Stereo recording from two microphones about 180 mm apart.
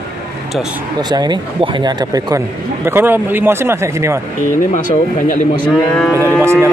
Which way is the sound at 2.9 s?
10° right (ahead or behind).